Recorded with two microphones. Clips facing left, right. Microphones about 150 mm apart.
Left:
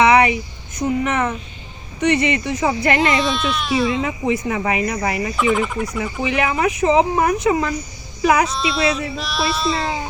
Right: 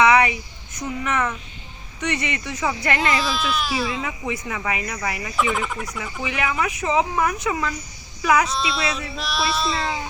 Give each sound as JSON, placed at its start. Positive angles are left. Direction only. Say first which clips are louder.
{"t": 0.0, "sound": "a sound", "louder": "left 3 dB", "side_deg": 20}
{"t": 0.8, "sound": "speech", "louder": "left 5 dB", "side_deg": 25}
{"t": 3.2, "sound": "speech", "louder": "left 3 dB", "side_deg": 0}
{"t": 3.9, "sound": "speech", "louder": "left 7 dB", "side_deg": 30}
{"t": 5.4, "sound": "speech", "louder": "left 4 dB", "side_deg": 0}
{"t": 6.2, "sound": "speech", "louder": "left 5 dB", "side_deg": 30}
{"t": 8.4, "sound": "speech", "louder": "left 5 dB", "side_deg": 0}